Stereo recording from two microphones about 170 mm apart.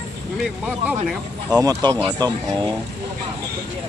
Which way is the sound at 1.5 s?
20° right (ahead or behind).